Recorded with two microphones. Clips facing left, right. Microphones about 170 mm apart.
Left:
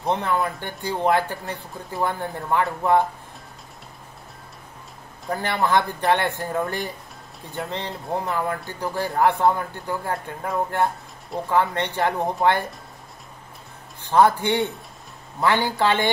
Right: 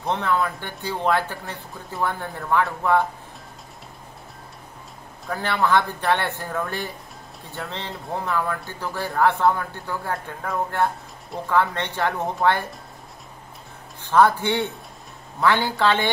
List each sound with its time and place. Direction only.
0.0 s speech: 15° left (ahead or behind)
5.4 s speech: 15° left (ahead or behind)
14.0 s speech: 15° left (ahead or behind)